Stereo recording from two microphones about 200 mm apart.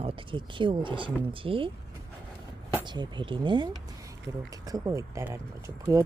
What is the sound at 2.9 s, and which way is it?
Speech, 25° right (ahead or behind).